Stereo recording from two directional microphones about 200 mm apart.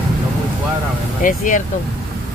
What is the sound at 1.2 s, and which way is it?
Speech, 40° left (ahead or behind).